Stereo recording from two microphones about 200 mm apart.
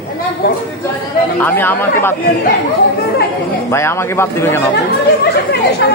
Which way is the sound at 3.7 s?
15° left (ahead or behind).